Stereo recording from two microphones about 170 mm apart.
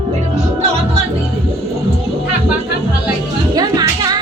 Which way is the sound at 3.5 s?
25° right (ahead or behind).